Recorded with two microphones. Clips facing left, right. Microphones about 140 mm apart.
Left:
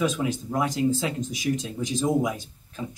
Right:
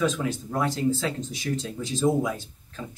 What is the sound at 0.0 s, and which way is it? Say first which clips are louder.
Speech: even; 15° left (ahead or behind).